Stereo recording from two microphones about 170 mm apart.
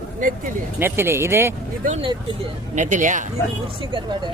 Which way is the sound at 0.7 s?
15° right (ahead or behind).